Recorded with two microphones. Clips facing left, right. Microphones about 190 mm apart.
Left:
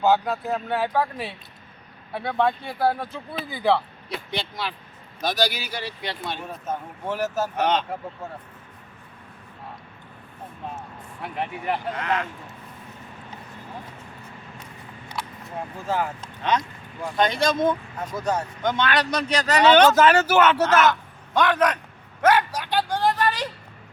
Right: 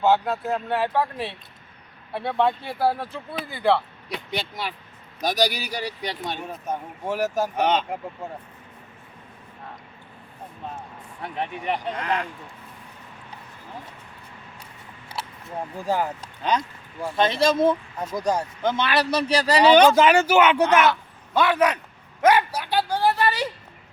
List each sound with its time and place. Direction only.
0.0 s speech: centre (ahead or behind)
4.1 s speech: 10° right (ahead or behind)
5.5 s speech: 40° right (ahead or behind)
6.7 s speech: 10° right (ahead or behind)
10.8 s a sound: 5° left (ahead or behind)
11.9 s speech: 35° right (ahead or behind)
15.9 s speech: 15° right (ahead or behind)
17.2 s speech: 25° right (ahead or behind)
18.2 s a man's voice: 10° right (ahead or behind)